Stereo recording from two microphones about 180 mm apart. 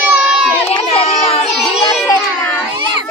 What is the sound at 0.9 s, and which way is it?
Children playing, 35° left (ahead or behind).